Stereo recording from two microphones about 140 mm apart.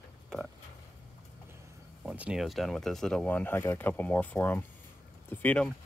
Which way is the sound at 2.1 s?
5° right (ahead or behind).